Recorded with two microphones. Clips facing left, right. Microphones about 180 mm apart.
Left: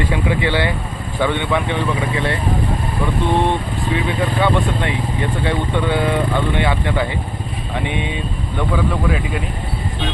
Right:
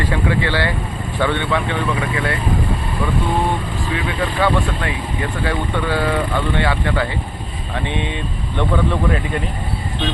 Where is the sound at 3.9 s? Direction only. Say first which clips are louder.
Left 1 dB; 20° left (ahead or behind).